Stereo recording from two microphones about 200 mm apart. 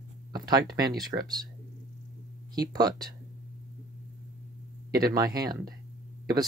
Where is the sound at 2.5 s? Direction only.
20° right (ahead or behind).